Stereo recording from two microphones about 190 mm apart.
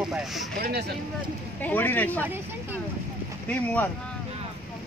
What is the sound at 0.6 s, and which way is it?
Speech, 55° right (ahead or behind).